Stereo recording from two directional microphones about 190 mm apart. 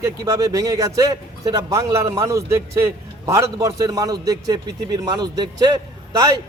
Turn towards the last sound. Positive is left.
turn(degrees=-20)  # may be behind; listen again after turning